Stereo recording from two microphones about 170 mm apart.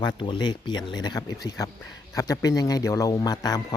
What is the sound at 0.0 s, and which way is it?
Speech, 25° left (ahead or behind).